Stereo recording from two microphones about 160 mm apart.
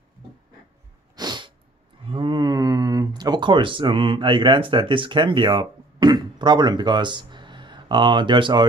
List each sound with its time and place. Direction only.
1.1 s sneeze: 25° right (ahead or behind)
2.0 s speech: 30° right (ahead or behind)